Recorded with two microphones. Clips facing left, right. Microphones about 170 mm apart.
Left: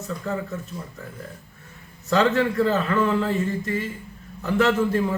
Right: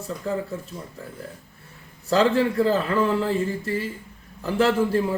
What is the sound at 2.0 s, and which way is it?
A man's voice, 35° right (ahead or behind).